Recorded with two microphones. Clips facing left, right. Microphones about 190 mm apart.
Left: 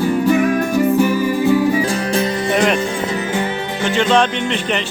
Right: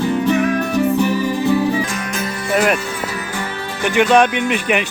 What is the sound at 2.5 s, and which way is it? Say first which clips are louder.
Music: right 1 dB; 5° right (ahead or behind).